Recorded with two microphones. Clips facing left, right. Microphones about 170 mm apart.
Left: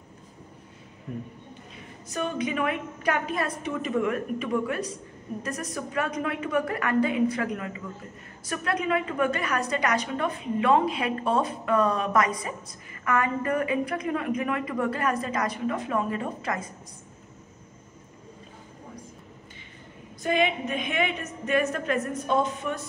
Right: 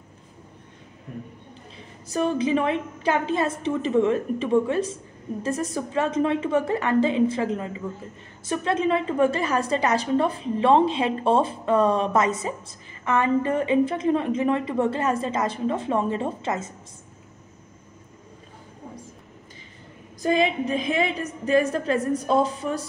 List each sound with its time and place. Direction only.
2.0 s a woman's voice: 30° right (ahead or behind)
20.2 s a woman's voice: 35° right (ahead or behind)